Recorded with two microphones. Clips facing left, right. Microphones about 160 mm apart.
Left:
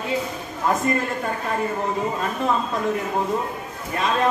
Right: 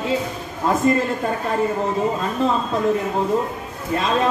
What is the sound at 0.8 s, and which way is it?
Speech, 25° right (ahead or behind).